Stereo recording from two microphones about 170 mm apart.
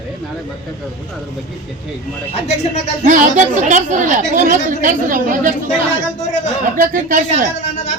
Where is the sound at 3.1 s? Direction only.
45° right (ahead or behind).